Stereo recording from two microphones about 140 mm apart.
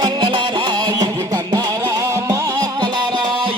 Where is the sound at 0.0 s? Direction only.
30° right (ahead or behind).